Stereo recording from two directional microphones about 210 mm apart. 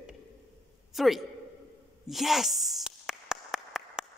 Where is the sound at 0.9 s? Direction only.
Centre (ahead or behind).